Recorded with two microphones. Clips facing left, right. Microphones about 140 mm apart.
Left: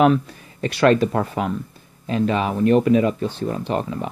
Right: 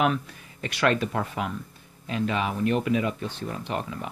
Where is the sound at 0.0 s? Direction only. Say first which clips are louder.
Left 8 dB; 35° left (ahead or behind).